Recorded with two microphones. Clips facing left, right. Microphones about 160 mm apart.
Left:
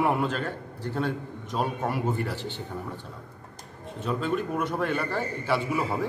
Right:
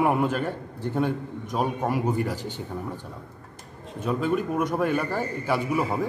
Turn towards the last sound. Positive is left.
turn(degrees=-10)  # may be behind; listen again after turning